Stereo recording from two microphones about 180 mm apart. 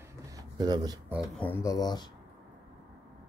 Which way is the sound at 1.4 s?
10° left (ahead or behind).